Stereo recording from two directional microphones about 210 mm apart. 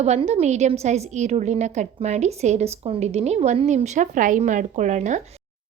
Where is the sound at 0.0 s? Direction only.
30° right (ahead or behind).